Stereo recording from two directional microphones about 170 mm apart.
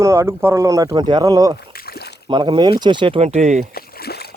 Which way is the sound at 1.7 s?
65° left (ahead or behind).